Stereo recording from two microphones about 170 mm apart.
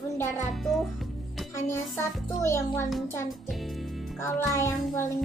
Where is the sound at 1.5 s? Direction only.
15° left (ahead or behind).